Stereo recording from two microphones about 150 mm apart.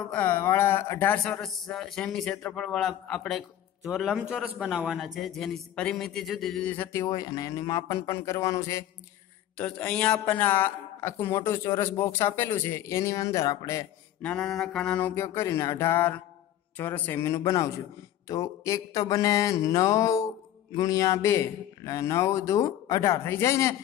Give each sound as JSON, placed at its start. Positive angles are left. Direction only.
{"t": 0.0, "sound": "speech", "side_deg": 10}
{"t": 9.6, "sound": "a man's voice", "side_deg": 10}
{"t": 14.2, "sound": "a man's voice", "side_deg": 5}